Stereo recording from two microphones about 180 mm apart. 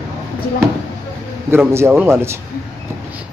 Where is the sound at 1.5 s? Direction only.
15° right (ahead or behind).